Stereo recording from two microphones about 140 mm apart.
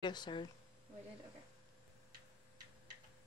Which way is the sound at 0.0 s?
30° left (ahead or behind).